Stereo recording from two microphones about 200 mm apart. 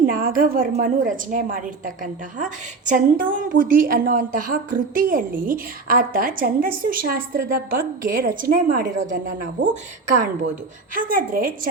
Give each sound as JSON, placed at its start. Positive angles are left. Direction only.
{"t": 0.0, "sound": "a woman's voice", "side_deg": -45}
{"t": 10.9, "sound": "a woman's voice", "side_deg": -45}